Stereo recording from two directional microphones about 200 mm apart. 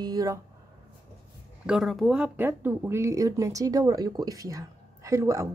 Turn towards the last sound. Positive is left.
turn(degrees=-15)  # may be behind; listen again after turning